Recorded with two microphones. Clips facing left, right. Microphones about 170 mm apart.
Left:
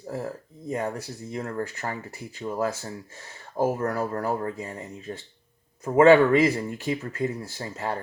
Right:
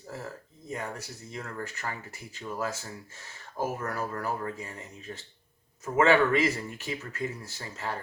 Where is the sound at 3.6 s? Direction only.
30° left (ahead or behind).